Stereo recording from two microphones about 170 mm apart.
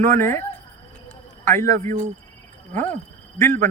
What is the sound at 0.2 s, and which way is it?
Speech, 15° left (ahead or behind).